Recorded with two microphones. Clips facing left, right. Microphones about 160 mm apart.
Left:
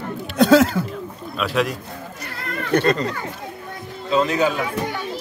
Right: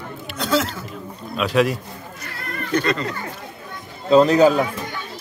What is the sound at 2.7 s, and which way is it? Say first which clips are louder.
Speech: left 3 dB; 60° left (ahead or behind).